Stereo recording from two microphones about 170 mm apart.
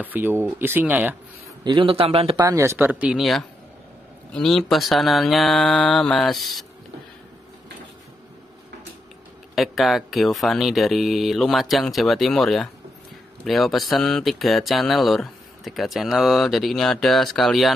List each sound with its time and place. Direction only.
0.0 s speech: 10° right (ahead or behind)
1.6 s a man's voice: 30° right (ahead or behind)
2.3 s speech: 20° right (ahead or behind); by 6.6 s centre (ahead or behind)
9.6 s speech: centre (ahead or behind)